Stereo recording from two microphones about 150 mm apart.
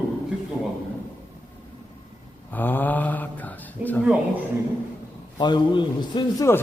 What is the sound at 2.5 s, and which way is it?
Mantra, 10° left (ahead or behind).